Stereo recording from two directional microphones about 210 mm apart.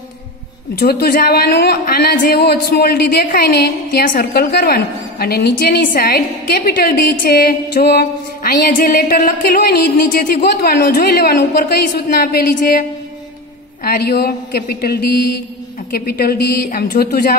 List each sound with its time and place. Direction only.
0.7 s a woman's voice: 50° left (ahead or behind)
13.8 s a woman's voice: 50° left (ahead or behind)